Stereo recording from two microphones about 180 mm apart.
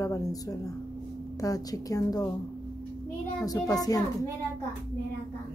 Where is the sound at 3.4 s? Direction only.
20° left (ahead or behind).